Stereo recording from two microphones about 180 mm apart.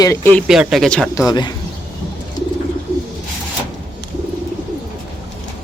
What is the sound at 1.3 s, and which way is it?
Speech, 25° left (ahead or behind).